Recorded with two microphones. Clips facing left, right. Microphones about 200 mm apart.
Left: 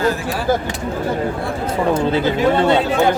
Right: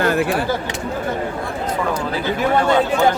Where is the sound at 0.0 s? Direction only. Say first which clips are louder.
Right 2 dB; 65° right (ahead or behind).